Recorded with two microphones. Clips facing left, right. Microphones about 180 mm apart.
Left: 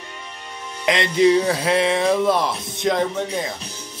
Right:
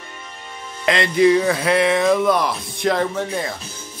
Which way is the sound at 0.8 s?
20° left (ahead or behind).